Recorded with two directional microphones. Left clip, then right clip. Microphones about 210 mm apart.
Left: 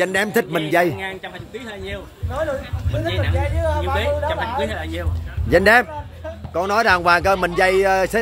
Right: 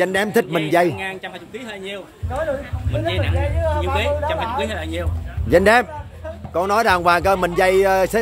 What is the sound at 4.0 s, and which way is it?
Speech, 35° right (ahead or behind).